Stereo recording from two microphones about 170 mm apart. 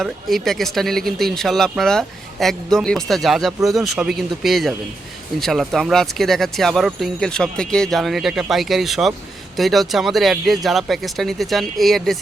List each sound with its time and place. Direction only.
0.0 s speech: centre (ahead or behind)